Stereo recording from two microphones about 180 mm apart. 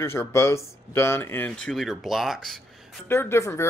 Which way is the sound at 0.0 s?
15° left (ahead or behind).